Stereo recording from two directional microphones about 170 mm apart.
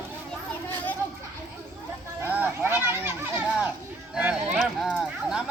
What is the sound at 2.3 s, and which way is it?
Children playing, 10° right (ahead or behind).